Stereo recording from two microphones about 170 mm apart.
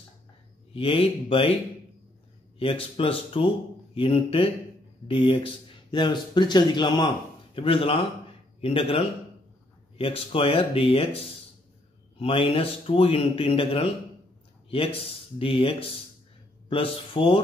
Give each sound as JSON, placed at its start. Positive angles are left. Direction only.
{"t": 0.7, "sound": "speech", "side_deg": 30}
{"t": 2.6, "sound": "a man's voice", "side_deg": 35}